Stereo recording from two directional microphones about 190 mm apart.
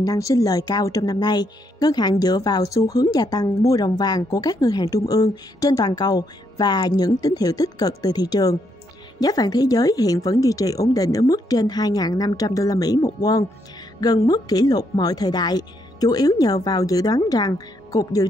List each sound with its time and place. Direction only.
0.0 s a woman's voice: 20° left (ahead or behind)